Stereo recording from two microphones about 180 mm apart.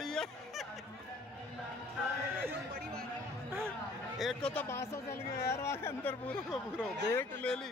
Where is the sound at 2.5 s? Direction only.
60° right (ahead or behind).